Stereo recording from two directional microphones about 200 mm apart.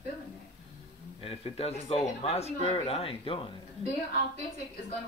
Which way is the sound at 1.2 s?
30° left (ahead or behind).